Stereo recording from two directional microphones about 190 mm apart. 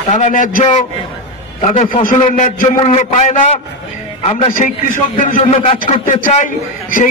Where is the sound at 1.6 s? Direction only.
30° left (ahead or behind).